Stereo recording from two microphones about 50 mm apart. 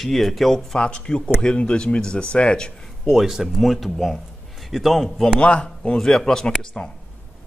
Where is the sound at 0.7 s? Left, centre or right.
Centre.